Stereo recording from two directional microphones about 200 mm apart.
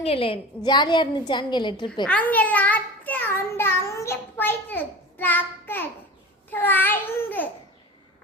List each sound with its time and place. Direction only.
0.0 s a woman's voice: 30° left (ahead or behind)
2.0 s a child's voice: 5° left (ahead or behind)